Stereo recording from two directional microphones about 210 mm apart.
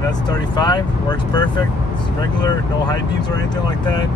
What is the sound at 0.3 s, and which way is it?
Speech, 20° left (ahead or behind).